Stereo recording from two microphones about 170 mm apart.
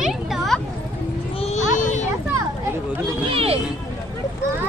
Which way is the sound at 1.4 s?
45° left (ahead or behind).